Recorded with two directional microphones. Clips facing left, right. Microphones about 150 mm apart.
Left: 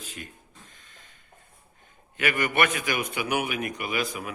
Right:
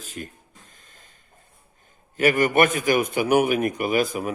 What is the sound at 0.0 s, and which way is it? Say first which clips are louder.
Speech: right 6 dB; 45° right (ahead or behind).